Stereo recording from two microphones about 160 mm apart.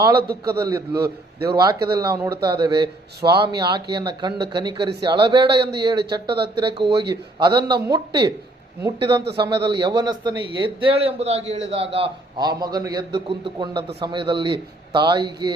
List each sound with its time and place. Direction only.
0.2 s a man's voice: 80° right
0.7 s a man's voice: 20° right (ahead or behind)